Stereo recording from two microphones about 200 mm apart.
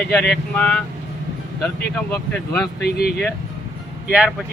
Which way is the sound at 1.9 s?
10° left (ahead or behind).